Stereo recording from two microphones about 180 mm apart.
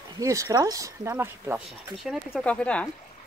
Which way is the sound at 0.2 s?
20° right (ahead or behind).